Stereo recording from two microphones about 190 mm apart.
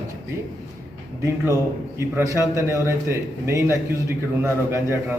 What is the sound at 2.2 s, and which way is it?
A man's voice, 15° right (ahead or behind).